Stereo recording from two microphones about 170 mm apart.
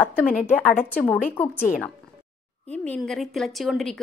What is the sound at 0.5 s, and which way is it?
A woman's voice, 10° left (ahead or behind).